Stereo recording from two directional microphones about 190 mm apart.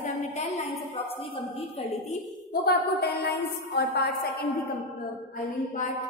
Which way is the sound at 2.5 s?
55° left (ahead or behind).